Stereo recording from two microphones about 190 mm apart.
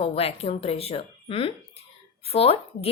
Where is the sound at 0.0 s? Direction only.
30° left (ahead or behind).